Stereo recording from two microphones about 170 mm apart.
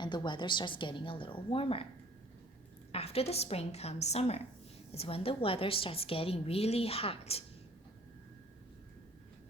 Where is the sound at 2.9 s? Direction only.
35° left (ahead or behind).